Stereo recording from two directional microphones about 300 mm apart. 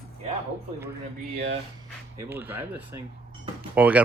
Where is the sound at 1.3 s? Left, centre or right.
Right.